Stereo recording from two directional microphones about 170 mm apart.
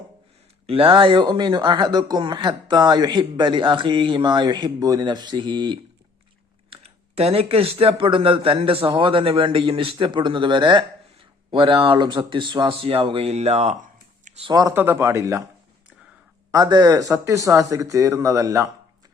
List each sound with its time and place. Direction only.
0.7 s speech: 35° right (ahead or behind)
14.3 s a sound: 40° right (ahead or behind)
14.5 s speech: 15° right (ahead or behind)
16.5 s speech: 25° right (ahead or behind)